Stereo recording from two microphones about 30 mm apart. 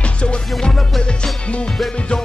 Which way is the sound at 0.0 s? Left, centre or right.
Left.